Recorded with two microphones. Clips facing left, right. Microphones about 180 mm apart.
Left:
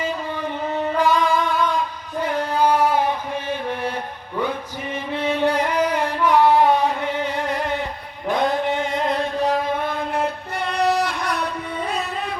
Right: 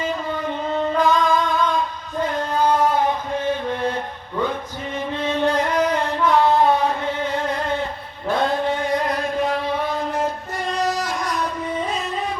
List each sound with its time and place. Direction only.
0.7 s music: 10° left (ahead or behind)
5.1 s a sound: 15° left (ahead or behind)
8.3 s chant: 15° left (ahead or behind)
9.4 s music: 45° left (ahead or behind); by 11.4 s 65° left (ahead or behind)